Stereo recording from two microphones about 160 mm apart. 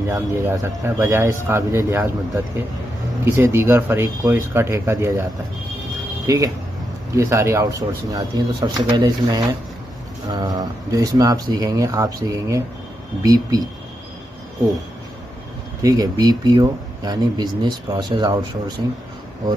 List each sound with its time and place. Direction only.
0.1 s speech: 15° right (ahead or behind)
6.2 s speech: 20° right (ahead or behind)
15.8 s speech: 25° right (ahead or behind)